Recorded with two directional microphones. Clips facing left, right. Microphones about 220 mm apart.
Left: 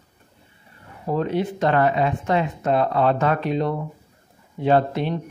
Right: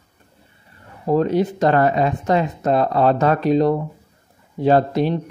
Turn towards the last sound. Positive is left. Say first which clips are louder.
# right 3 dB
turn(degrees=-40)  # may be behind; listen again after turning